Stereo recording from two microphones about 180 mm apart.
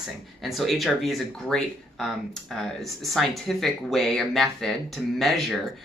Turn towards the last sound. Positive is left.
turn(degrees=0)  # may be behind; listen again after turning